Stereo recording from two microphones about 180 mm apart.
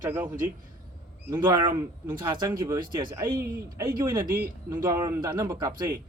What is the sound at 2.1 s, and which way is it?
A man's voice, 25° right (ahead or behind).